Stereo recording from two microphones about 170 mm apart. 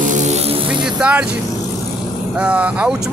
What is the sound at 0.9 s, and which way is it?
Speech, 5° right (ahead or behind).